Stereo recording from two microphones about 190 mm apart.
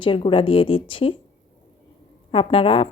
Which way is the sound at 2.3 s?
30° left (ahead or behind).